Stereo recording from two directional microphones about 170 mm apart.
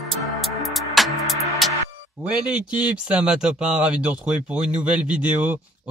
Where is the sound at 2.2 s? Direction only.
5° right (ahead or behind).